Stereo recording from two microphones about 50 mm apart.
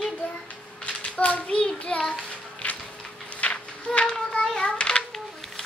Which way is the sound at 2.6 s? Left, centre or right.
Left.